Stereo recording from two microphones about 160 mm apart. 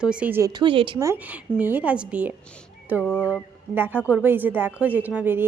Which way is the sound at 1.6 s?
10° right (ahead or behind).